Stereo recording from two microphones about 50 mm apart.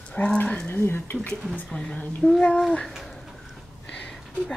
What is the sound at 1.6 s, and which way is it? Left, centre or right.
Speech, centre.